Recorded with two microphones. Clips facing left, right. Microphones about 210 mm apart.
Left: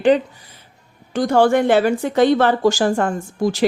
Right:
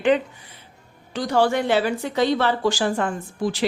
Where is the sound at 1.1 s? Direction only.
50° left (ahead or behind).